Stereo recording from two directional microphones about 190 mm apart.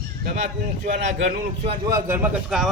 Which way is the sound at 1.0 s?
75° right (ahead or behind).